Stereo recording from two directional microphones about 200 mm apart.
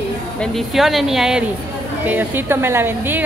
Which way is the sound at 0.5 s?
Centre (ahead or behind).